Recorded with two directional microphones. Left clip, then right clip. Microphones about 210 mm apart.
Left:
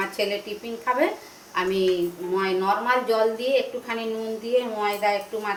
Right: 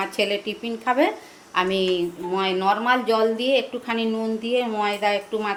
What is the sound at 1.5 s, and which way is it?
A woman's voice, 50° right (ahead or behind).